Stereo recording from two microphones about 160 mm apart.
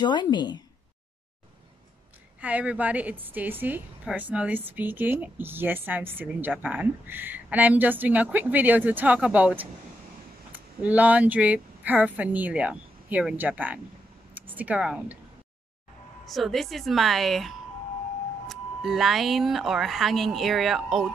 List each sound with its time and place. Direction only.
0.0 s a woman's voice: 30° left (ahead or behind)
2.4 s a woman's voice: 10° right (ahead or behind)
16.3 s speech: centre (ahead or behind)